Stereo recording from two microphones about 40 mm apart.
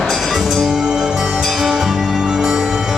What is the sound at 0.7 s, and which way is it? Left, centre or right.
Music, centre.